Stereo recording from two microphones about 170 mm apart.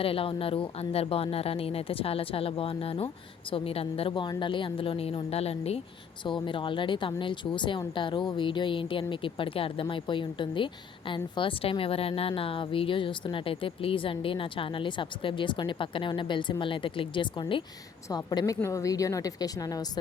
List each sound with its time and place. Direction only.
0.0 s speech: 35° left (ahead or behind)